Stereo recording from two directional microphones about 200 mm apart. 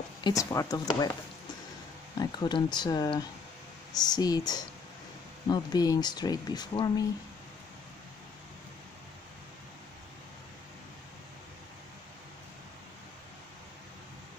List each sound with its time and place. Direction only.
0.2 s speech: 15° left (ahead or behind)
2.1 s speech: 20° left (ahead or behind)